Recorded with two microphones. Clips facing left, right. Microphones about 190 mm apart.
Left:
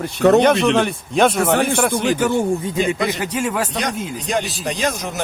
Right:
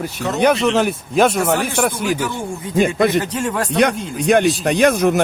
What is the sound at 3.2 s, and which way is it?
Speech, 10° left (ahead or behind).